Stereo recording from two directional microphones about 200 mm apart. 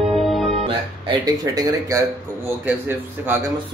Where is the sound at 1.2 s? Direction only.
20° right (ahead or behind).